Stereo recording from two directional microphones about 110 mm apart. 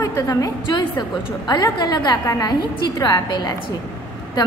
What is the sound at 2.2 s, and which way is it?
A woman's voice, 30° left (ahead or behind).